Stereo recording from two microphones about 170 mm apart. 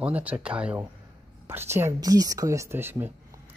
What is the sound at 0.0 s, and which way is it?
Speech, 10° right (ahead or behind).